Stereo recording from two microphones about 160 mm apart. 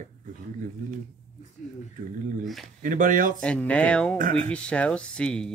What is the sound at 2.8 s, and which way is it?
Speech, 55° right (ahead or behind).